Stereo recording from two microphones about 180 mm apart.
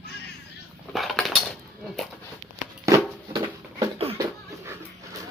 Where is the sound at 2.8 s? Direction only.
20° right (ahead or behind).